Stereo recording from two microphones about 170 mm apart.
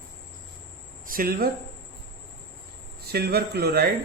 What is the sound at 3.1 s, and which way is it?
Speech, 65° right (ahead or behind).